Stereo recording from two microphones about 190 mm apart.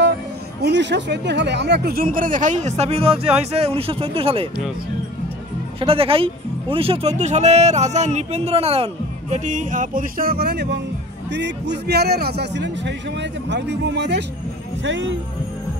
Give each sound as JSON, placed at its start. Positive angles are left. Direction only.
{"t": 0.6, "sound": "speech", "side_deg": -65}
{"t": 5.8, "sound": "a man's voice", "side_deg": -30}
{"t": 14.8, "sound": "speech", "side_deg": -80}